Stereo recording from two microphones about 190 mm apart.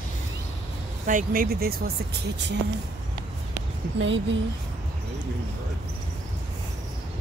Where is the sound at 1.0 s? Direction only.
45° right (ahead or behind).